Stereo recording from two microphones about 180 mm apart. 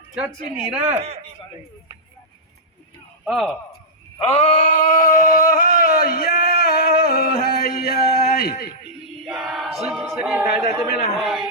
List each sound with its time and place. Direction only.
0.1 s speech: 5° right (ahead or behind)
0.8 s speech: 30° right (ahead or behind)
3.2 s speech: centre (ahead or behind)
4.3 s a sound: 35° left (ahead or behind); by 7.9 s 60° left (ahead or behind)
8.4 s speech: 55° left (ahead or behind)
9.2 s choir: centre (ahead or behind)
10.3 s speech: 15° right (ahead or behind)
11.2 s speech: centre (ahead or behind)